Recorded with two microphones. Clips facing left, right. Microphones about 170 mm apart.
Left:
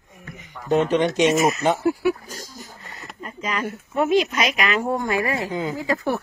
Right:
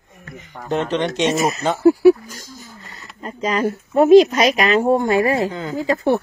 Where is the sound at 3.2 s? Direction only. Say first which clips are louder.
Right 7 dB; 35° right (ahead or behind).